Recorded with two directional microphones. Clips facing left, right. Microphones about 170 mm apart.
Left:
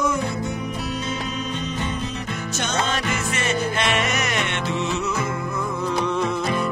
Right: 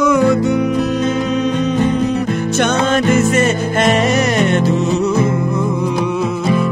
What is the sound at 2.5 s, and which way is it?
Music, 60° right (ahead or behind).